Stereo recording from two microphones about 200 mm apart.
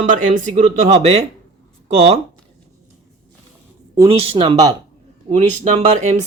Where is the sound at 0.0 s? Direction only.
40° right (ahead or behind).